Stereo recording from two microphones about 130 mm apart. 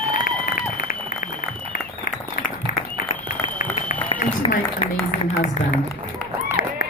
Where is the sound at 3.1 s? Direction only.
90° left.